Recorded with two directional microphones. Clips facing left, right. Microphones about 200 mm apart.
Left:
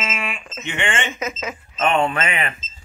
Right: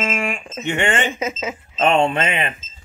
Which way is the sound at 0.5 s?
40° right (ahead or behind).